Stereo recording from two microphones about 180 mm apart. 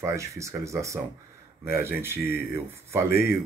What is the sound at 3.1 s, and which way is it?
Speech, 60° left (ahead or behind).